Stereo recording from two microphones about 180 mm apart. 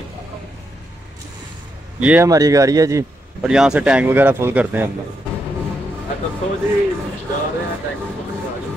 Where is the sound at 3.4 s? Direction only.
5° right (ahead or behind).